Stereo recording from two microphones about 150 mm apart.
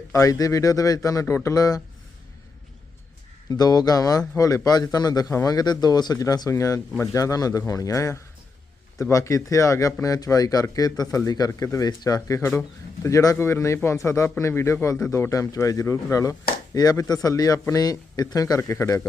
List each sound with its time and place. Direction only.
0.1 s speech: 20° left (ahead or behind)
3.5 s speech: 25° left (ahead or behind)